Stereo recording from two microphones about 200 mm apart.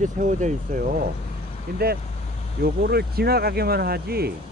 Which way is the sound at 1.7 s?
50° right (ahead or behind).